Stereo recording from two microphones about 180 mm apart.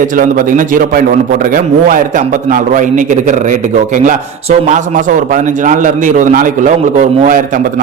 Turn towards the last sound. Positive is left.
turn(degrees=-45)  # may be behind; listen again after turning